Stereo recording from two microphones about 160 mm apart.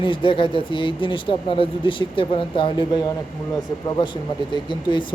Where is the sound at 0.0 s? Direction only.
30° left (ahead or behind).